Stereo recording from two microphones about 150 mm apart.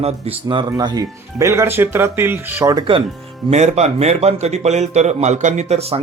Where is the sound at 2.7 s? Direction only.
35° right (ahead or behind).